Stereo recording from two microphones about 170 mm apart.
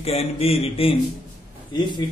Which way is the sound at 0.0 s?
35° left (ahead or behind).